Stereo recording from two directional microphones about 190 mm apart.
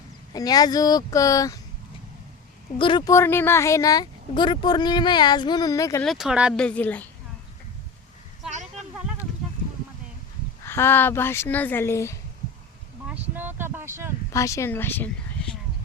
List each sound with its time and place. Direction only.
0.3 s speech: 20° left (ahead or behind)
2.7 s speech: 25° left (ahead or behind)
6.0 s speech: centre (ahead or behind)
6.6 s speech: 5° left (ahead or behind)
8.4 s a sound: 40° right (ahead or behind)
10.7 s speech: 10° left (ahead or behind)
13.1 s a sound: 10° right (ahead or behind)
14.3 s speech: 15° left (ahead or behind)